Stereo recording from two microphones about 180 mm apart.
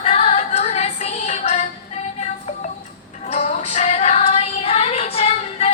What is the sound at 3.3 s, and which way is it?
Female singing, 40° left (ahead or behind).